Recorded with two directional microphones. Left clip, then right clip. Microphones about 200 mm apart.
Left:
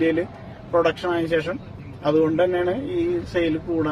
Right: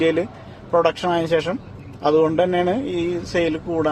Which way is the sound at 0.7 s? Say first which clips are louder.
Right 2 dB; 55° right (ahead or behind).